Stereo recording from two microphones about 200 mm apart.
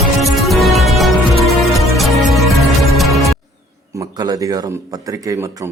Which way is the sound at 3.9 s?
20° right (ahead or behind).